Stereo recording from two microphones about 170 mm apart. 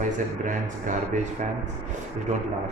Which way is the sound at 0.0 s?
45° right (ahead or behind).